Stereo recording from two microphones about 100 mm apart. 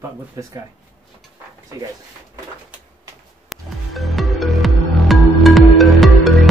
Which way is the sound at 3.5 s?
Centre (ahead or behind).